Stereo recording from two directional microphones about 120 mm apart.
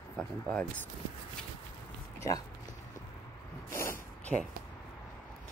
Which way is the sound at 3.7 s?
20° left (ahead or behind).